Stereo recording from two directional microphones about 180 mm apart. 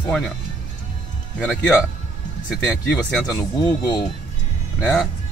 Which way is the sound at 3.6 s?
25° left (ahead or behind).